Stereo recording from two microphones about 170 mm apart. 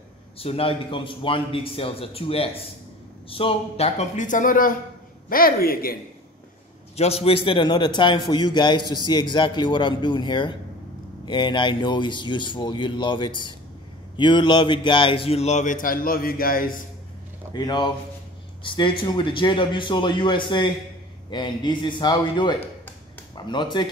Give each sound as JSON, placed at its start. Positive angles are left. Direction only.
{"t": 0.4, "sound": "a man's voice", "side_deg": 35}
{"t": 7.0, "sound": "a man's voice", "side_deg": 35}
{"t": 17.5, "sound": "a man's voice", "side_deg": 25}